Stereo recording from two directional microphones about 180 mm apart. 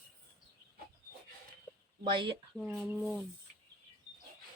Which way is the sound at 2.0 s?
30° right (ahead or behind).